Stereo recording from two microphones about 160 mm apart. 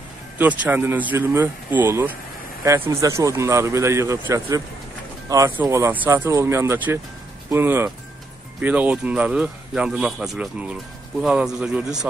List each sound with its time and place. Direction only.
0.4 s speech: 10° right (ahead or behind)